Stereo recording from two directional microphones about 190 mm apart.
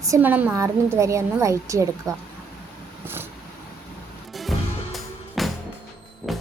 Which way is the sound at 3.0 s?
10° right (ahead or behind).